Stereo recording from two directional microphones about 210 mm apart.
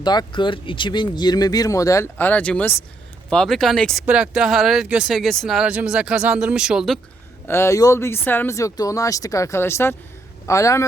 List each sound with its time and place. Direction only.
0.0 s speech: 20° left (ahead or behind); by 7.0 s centre (ahead or behind)
7.4 s speech: 10° left (ahead or behind)